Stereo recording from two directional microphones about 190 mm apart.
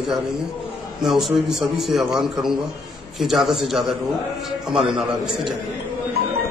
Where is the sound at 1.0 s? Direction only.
Centre (ahead or behind).